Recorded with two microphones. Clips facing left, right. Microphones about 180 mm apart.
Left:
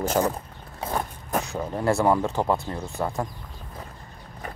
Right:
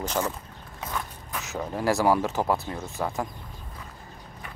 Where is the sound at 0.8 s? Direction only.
40° left (ahead or behind).